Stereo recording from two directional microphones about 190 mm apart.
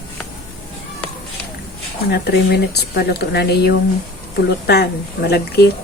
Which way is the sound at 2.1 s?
55° left (ahead or behind).